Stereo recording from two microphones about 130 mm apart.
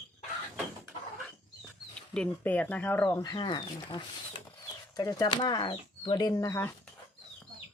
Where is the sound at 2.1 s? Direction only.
10° left (ahead or behind).